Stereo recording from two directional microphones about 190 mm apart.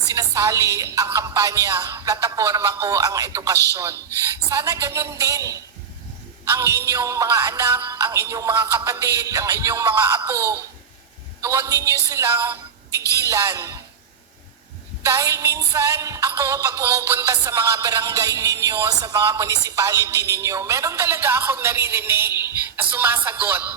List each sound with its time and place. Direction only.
0.1 s music: 15° right (ahead or behind)
15.0 s music: 15° right (ahead or behind)